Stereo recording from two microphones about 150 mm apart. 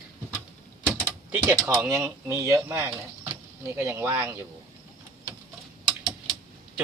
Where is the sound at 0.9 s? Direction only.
15° right (ahead or behind).